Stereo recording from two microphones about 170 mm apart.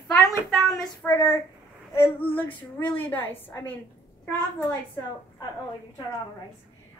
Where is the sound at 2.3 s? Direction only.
30° left (ahead or behind).